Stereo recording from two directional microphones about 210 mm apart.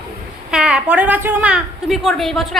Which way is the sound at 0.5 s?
5° right (ahead or behind).